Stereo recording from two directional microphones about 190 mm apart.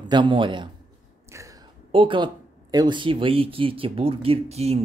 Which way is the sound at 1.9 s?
25° right (ahead or behind).